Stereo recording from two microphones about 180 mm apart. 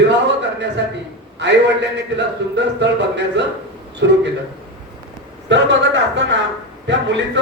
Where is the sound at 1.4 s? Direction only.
75° right (ahead or behind).